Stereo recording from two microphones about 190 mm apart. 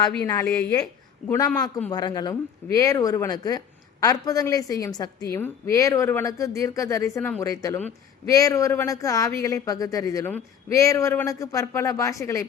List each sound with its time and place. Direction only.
0.1 s speech: 10° left (ahead or behind)
1.9 s speech: 20° left (ahead or behind)